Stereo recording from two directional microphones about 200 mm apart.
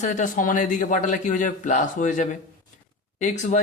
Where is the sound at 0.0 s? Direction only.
40° left (ahead or behind).